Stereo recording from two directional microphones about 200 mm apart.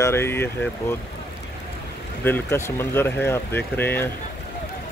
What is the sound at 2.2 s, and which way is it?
Speech, 10° left (ahead or behind).